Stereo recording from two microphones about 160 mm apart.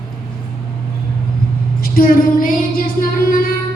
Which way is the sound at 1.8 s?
65° left (ahead or behind).